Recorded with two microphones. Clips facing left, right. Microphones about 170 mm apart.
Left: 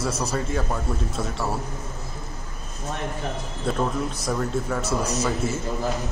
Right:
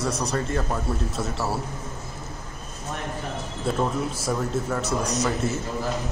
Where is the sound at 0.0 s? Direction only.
5° left (ahead or behind).